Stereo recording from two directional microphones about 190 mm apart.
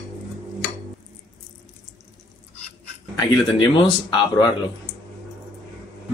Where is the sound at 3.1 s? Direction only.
25° left (ahead or behind).